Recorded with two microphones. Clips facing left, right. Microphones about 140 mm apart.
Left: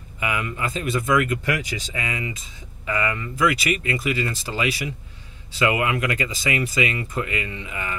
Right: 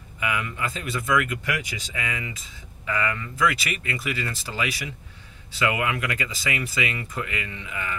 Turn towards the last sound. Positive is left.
turn(degrees=25)  # may be behind; listen again after turning